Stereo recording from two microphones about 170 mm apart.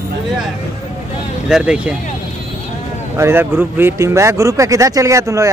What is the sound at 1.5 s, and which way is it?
Speech, 5° right (ahead or behind).